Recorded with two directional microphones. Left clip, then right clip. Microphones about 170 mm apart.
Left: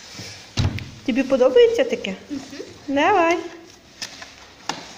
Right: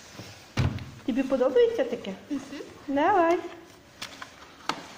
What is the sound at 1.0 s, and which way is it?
A woman's voice, 15° left (ahead or behind).